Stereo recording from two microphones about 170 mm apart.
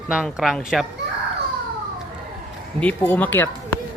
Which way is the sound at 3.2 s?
10° left (ahead or behind).